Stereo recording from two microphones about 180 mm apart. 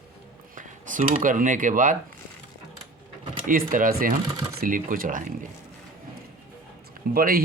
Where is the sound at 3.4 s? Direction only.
50° right (ahead or behind).